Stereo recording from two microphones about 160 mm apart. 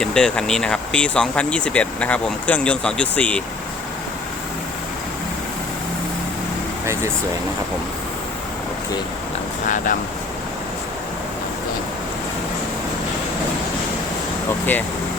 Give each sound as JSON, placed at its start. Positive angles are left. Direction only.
{"t": 0.0, "sound": "speech", "side_deg": 5}
{"t": 9.6, "sound": "speech", "side_deg": 50}